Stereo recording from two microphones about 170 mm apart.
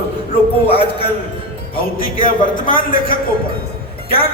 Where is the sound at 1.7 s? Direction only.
55° left (ahead or behind).